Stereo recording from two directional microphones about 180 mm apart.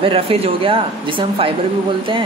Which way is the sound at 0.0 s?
30° right (ahead or behind).